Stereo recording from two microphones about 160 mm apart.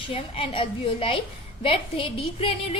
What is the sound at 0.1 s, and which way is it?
A woman's voice, 35° left (ahead or behind).